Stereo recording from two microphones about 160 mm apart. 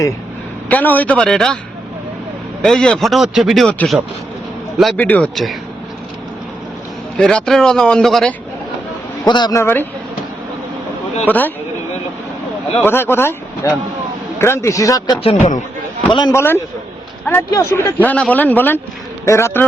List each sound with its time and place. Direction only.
0.7 s speech: 10° left (ahead or behind)
2.6 s speech: 5° left (ahead or behind)
7.2 s speech: 5° left (ahead or behind)
9.2 s speech: 25° left (ahead or behind)
9.6 s speech: 15° left (ahead or behind)
11.3 s speech: 10° left (ahead or behind)
12.8 s speech: 15° left (ahead or behind)
15.3 s a man's voice: 50° left (ahead or behind)
16.0 s speech: 30° left (ahead or behind)
16.3 s speech: 15° left (ahead or behind)